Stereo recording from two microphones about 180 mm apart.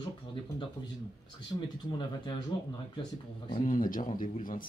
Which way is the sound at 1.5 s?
25° left (ahead or behind).